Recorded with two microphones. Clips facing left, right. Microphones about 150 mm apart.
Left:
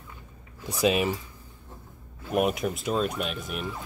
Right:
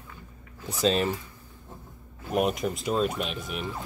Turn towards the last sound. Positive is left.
turn(degrees=0)  # may be behind; listen again after turning